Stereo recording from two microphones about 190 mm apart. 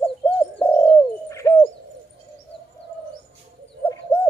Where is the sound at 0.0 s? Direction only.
10° left (ahead or behind).